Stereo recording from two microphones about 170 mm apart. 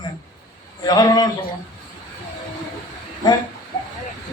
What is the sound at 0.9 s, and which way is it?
Speech, 25° left (ahead or behind).